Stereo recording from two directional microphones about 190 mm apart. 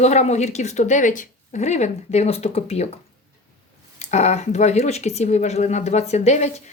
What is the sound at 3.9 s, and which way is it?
Speech, 35° left (ahead or behind).